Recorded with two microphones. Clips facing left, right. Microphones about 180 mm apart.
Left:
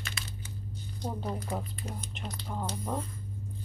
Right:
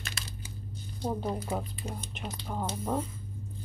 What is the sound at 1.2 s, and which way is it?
Speech, 5° right (ahead or behind).